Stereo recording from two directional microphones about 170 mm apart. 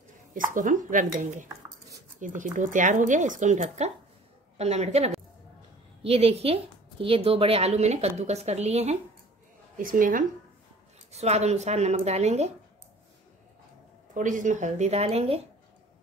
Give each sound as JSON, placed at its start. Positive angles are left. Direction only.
{"t": 0.3, "sound": "a woman's voice", "side_deg": -50}
{"t": 9.8, "sound": "speech", "side_deg": -55}
{"t": 11.1, "sound": "a woman's voice", "side_deg": -40}
{"t": 14.1, "sound": "speech", "side_deg": -50}